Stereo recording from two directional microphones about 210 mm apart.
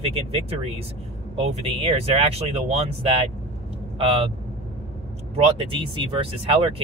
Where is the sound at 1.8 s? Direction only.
25° right (ahead or behind).